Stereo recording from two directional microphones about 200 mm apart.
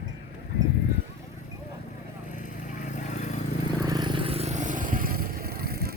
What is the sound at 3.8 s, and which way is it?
Vehicle, 20° right (ahead or behind).